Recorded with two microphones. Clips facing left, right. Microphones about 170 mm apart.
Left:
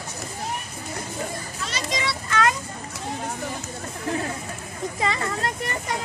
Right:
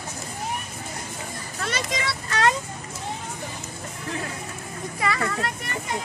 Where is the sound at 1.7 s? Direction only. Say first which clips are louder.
Even; 55° right (ahead or behind).